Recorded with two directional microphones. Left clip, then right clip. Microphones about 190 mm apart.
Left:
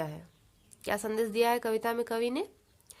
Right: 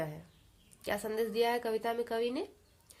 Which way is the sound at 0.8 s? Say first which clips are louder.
Left 3 dB; 35° left (ahead or behind).